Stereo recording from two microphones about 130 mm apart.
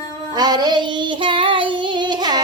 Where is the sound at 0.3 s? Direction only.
30° right (ahead or behind).